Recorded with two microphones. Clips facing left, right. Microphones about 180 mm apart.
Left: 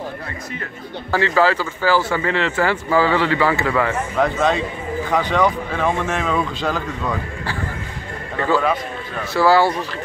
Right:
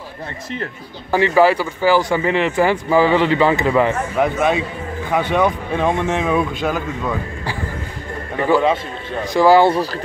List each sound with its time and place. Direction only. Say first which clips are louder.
1.1 s speech: right 4 dB; 15° right (ahead or behind)